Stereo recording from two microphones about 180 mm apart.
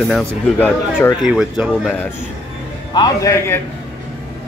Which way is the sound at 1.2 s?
5° right (ahead or behind).